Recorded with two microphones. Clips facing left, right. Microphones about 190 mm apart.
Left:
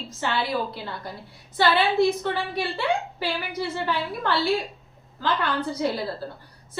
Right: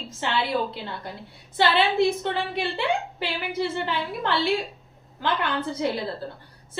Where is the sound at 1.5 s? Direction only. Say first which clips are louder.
Even; 25° right (ahead or behind).